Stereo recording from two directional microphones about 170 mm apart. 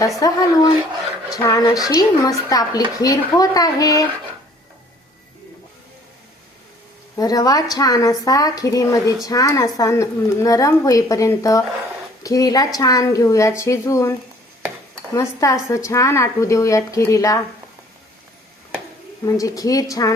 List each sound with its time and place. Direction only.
0.2 s speech: 20° left (ahead or behind)
7.2 s speech: 20° left (ahead or behind)
19.2 s speech: 20° left (ahead or behind)